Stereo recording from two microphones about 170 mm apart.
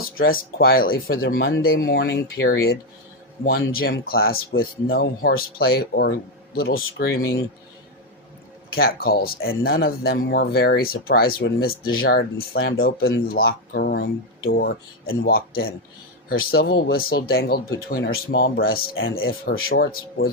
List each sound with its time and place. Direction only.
0.0 s speech: 60° left (ahead or behind)
8.7 s speech: 60° left (ahead or behind)